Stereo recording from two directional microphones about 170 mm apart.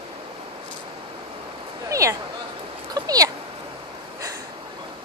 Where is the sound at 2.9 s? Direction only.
20° right (ahead or behind).